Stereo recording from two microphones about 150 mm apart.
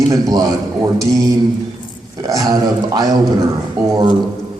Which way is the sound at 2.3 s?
25° right (ahead or behind).